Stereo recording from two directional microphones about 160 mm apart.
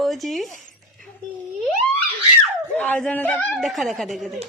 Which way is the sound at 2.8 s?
10° left (ahead or behind).